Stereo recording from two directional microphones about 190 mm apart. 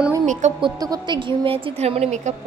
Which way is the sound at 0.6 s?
20° right (ahead or behind).